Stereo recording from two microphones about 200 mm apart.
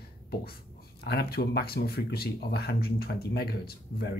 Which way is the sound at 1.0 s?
50° left (ahead or behind).